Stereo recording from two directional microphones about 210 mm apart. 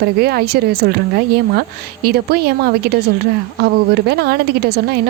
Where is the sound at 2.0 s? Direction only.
50° right (ahead or behind).